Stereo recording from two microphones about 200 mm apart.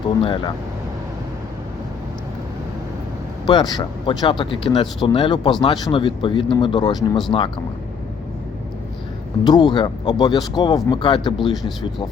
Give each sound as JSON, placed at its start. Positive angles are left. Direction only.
{"t": 0.2, "sound": "speech", "side_deg": 25}
{"t": 3.4, "sound": "speech", "side_deg": 20}
{"t": 9.4, "sound": "speech", "side_deg": 20}